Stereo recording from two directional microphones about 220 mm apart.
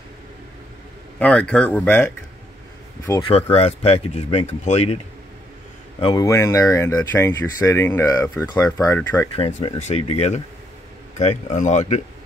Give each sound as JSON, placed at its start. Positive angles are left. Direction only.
{"t": 1.2, "sound": "speech", "side_deg": 5}
{"t": 3.1, "sound": "speech", "side_deg": 20}
{"t": 5.9, "sound": "speech", "side_deg": 20}
{"t": 9.8, "sound": "speech", "side_deg": 30}